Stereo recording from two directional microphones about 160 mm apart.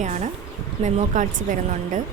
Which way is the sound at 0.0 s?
50° right (ahead or behind).